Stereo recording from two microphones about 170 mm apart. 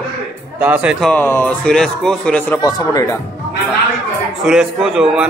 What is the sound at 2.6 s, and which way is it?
Speech, 20° left (ahead or behind).